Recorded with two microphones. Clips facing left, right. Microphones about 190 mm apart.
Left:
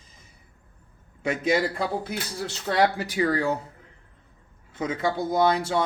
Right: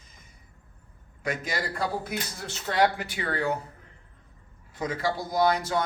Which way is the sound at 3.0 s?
35° left (ahead or behind).